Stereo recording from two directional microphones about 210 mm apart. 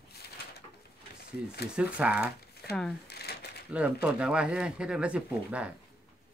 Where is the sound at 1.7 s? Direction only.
5° right (ahead or behind).